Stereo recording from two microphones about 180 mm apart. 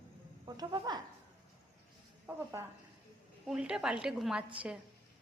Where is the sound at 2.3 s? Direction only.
10° right (ahead or behind).